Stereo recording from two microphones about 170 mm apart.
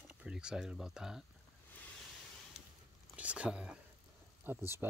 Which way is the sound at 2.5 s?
40° left (ahead or behind).